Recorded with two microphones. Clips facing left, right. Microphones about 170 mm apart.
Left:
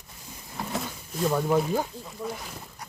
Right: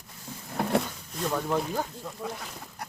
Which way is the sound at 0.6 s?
65° right (ahead or behind).